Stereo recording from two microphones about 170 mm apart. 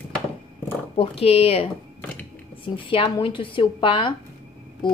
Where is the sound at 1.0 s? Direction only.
35° left (ahead or behind).